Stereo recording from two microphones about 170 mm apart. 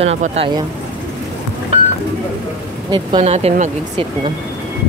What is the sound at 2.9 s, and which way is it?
Speech, 30° right (ahead or behind).